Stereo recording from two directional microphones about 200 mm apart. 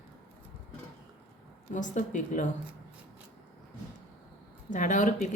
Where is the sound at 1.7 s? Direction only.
40° left (ahead or behind).